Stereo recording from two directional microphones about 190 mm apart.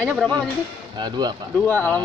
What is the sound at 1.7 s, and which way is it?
Speech, 10° left (ahead or behind).